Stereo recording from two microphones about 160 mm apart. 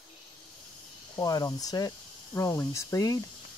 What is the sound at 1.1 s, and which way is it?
Speech, 25° left (ahead or behind).